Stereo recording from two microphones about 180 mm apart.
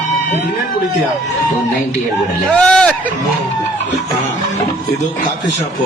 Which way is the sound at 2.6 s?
5° left (ahead or behind).